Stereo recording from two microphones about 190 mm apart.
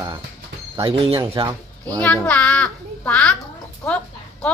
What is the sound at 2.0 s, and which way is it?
A child's voice, 5° left (ahead or behind).